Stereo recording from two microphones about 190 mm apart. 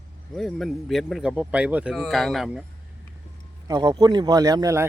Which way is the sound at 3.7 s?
20° right (ahead or behind).